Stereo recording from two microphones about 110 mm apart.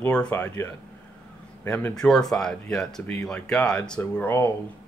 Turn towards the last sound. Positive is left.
turn(degrees=20)  # may be behind; listen again after turning